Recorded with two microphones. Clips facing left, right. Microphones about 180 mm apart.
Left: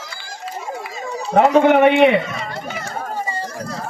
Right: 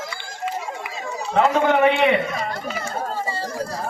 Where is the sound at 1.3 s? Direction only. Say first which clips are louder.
Left 4 dB; 40° left (ahead or behind).